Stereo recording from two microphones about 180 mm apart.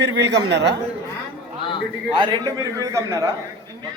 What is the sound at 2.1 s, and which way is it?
A man's voice, 25° right (ahead or behind).